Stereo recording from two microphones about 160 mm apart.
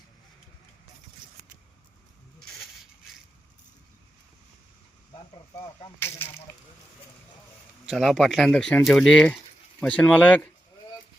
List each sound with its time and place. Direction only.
6.0 s speech: 15° left (ahead or behind)
7.9 s speech: centre (ahead or behind)